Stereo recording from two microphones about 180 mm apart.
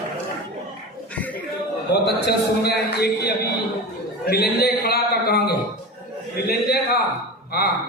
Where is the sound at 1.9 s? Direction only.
65° left (ahead or behind).